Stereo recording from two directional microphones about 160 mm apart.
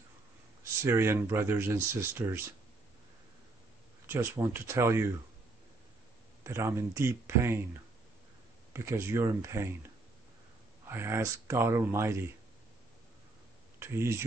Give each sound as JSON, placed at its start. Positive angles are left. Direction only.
{"t": 0.8, "sound": "speech", "side_deg": -15}
{"t": 4.1, "sound": "speech", "side_deg": -15}
{"t": 6.4, "sound": "speech", "side_deg": -15}
{"t": 8.7, "sound": "speech", "side_deg": -15}
{"t": 10.9, "sound": "speech", "side_deg": -15}
{"t": 13.7, "sound": "speech", "side_deg": -15}